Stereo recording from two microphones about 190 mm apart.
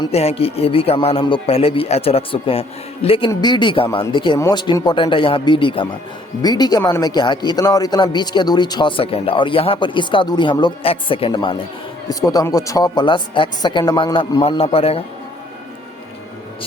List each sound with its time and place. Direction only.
0.0 s a man's voice: 35° left (ahead or behind)